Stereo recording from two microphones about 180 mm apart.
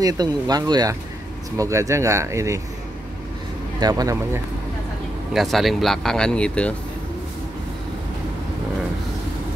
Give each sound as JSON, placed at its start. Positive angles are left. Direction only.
{"t": 0.0, "sound": "speech", "side_deg": -20}
{"t": 3.8, "sound": "speech", "side_deg": -20}
{"t": 5.3, "sound": "speech", "side_deg": 0}